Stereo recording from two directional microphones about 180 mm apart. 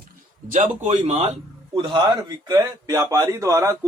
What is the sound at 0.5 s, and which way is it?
A man's voice, 40° right (ahead or behind).